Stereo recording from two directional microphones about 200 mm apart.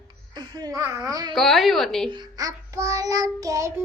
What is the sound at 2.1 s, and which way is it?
Child singing, 20° right (ahead or behind).